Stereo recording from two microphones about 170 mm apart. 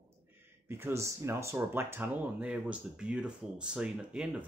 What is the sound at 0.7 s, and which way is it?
Speech, 15° right (ahead or behind).